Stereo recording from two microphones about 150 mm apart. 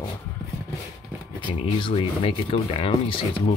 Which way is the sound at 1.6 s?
35° left (ahead or behind).